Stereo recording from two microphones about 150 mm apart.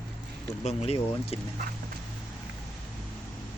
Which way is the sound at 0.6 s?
45° left (ahead or behind).